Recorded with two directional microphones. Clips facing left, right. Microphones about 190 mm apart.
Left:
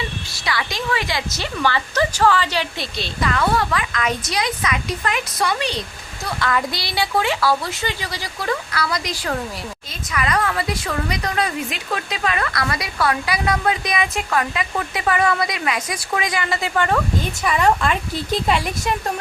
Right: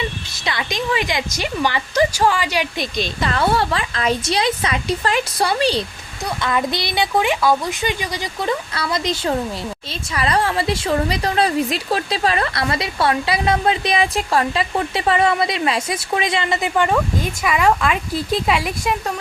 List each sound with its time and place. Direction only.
0.3 s a woman's voice: 20° right (ahead or behind)
3.2 s a woman's voice: 30° right (ahead or behind)
6.2 s a woman's voice: 20° right (ahead or behind)
17.4 s speech: 5° right (ahead or behind)